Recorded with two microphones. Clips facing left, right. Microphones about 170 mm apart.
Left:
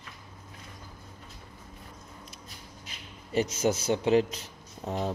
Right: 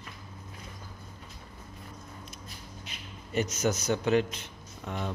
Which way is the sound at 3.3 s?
30° left (ahead or behind).